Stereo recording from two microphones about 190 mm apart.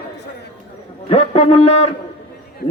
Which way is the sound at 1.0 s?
30° left (ahead or behind).